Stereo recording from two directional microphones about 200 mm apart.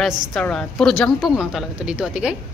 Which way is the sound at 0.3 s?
5° left (ahead or behind).